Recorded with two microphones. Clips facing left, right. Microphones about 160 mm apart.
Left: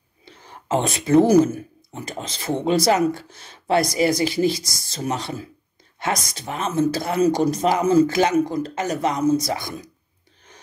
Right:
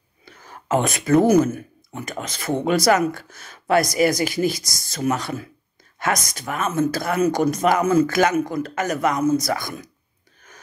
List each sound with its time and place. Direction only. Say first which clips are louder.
0.2 s speech: right 1 dB; 30° left (ahead or behind)